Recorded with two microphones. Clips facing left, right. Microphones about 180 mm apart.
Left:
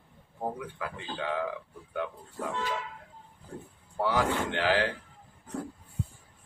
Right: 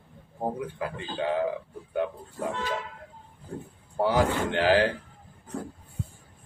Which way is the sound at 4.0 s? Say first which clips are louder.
Right 4 dB; 40° right (ahead or behind).